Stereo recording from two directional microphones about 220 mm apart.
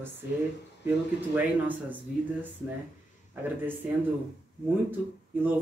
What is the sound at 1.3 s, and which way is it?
Speech, 5° right (ahead or behind).